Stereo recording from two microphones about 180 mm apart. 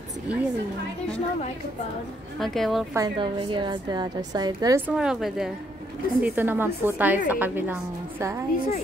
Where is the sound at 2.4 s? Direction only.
Centre (ahead or behind).